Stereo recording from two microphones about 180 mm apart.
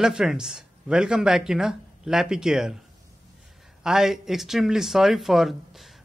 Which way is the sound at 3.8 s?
Centre (ahead or behind).